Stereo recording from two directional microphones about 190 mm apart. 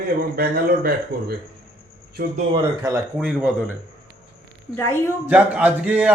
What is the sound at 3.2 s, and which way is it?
Speech, 5° right (ahead or behind).